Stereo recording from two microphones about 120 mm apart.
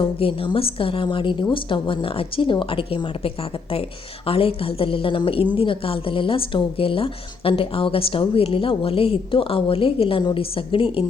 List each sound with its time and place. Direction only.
0.0 s a woman's voice: 50° left (ahead or behind)